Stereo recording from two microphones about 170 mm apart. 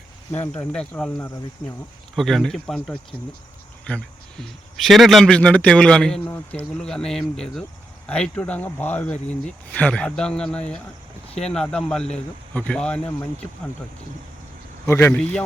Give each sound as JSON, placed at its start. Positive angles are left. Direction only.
{"t": 0.3, "sound": "speech", "side_deg": 15}
{"t": 14.8, "sound": "speech", "side_deg": 15}